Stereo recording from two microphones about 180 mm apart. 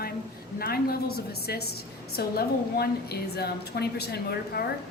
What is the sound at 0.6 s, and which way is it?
A woman's voice, 60° left (ahead or behind).